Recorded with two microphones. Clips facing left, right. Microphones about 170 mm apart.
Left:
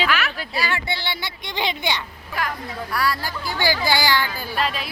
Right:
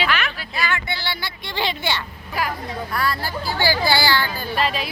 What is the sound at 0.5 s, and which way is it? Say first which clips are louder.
A child's voice: right 1 dB; 30° left (ahead or behind).